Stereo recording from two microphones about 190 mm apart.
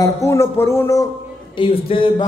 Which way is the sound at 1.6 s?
30° left (ahead or behind).